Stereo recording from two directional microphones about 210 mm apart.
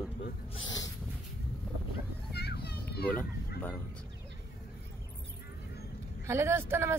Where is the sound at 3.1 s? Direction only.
5° left (ahead or behind).